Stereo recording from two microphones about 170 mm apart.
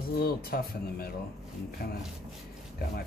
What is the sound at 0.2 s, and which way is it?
Speech, 60° left (ahead or behind).